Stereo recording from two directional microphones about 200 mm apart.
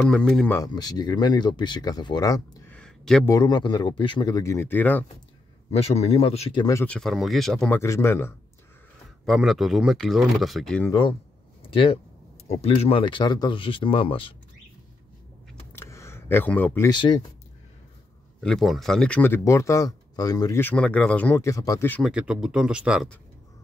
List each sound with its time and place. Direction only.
0.0 s speech: 5° left (ahead or behind)
0.6 s speech: 20° left (ahead or behind)
2.7 s a sound: 5° left (ahead or behind)
3.3 s speech: 20° left (ahead or behind)
5.7 s speech: 30° left (ahead or behind)
6.6 s speech: 15° left (ahead or behind)
7.0 s speech: centre (ahead or behind)
7.8 s speech: 15° left (ahead or behind)
9.2 s speech: centre (ahead or behind)
10.9 s speech: 25° left (ahead or behind)
15.7 s a sound: 10° left (ahead or behind)
18.4 s speech: centre (ahead or behind)
22.0 s speech: 5° right (ahead or behind)